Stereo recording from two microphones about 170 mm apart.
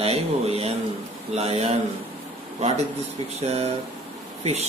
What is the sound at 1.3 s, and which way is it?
Speech, 40° right (ahead or behind).